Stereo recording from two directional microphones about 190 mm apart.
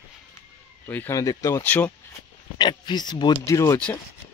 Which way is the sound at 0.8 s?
10° left (ahead or behind).